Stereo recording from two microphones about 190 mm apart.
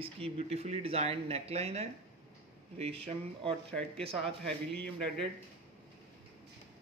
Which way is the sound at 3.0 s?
30° right (ahead or behind).